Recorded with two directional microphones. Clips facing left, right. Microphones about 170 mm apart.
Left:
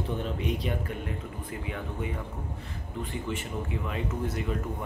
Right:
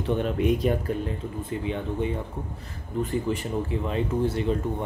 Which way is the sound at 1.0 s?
25° right (ahead or behind).